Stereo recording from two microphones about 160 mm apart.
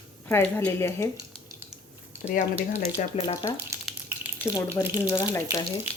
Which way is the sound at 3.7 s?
20° right (ahead or behind).